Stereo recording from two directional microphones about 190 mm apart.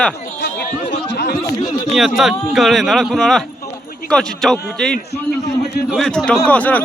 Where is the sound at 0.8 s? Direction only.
60° left (ahead or behind).